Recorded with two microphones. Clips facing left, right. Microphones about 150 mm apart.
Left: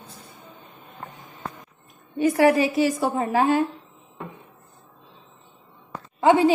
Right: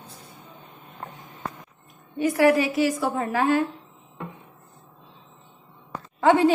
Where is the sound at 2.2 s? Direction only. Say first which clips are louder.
Left 1 dB; 25° left (ahead or behind).